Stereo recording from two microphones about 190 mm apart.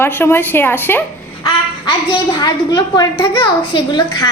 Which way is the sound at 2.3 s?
20° left (ahead or behind).